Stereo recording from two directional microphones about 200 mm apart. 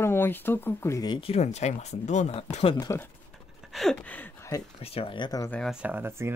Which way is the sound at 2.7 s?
15° left (ahead or behind).